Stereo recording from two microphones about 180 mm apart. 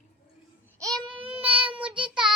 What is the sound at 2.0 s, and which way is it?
Child singing, 5° right (ahead or behind).